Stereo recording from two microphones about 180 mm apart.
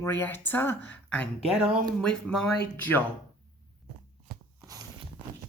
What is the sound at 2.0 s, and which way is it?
Speech, 5° left (ahead or behind).